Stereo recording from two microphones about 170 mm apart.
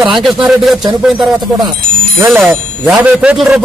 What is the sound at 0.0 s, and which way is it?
A man's voice, centre (ahead or behind).